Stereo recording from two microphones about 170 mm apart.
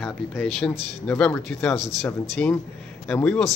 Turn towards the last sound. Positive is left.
turn(degrees=5)  # may be behind; listen again after turning